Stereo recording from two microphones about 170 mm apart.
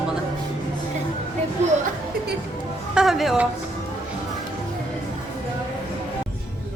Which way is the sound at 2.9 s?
5° right (ahead or behind).